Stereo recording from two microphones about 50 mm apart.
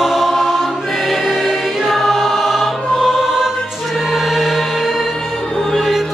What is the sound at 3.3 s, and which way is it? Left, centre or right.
Choir, centre.